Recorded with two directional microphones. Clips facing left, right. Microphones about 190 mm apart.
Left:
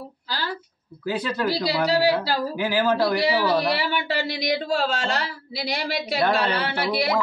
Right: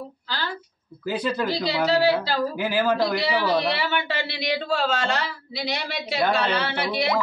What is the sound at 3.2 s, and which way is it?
Speech, 10° left (ahead or behind).